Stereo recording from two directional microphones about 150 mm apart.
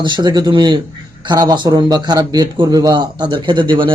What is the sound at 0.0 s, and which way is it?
A man's voice, 30° right (ahead or behind).